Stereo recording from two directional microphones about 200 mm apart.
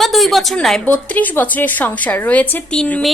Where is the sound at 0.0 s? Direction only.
Centre (ahead or behind).